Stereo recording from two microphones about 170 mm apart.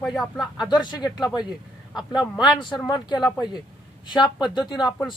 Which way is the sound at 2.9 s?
25° left (ahead or behind).